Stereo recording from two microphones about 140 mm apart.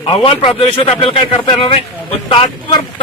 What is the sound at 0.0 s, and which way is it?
A man's voice, 40° left (ahead or behind).